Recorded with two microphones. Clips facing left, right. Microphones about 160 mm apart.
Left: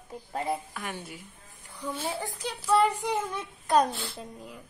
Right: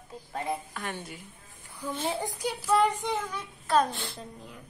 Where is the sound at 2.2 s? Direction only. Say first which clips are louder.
Right 3 dB; 10° right (ahead or behind).